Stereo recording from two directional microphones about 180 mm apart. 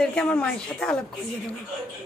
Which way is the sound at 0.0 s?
5° left (ahead or behind).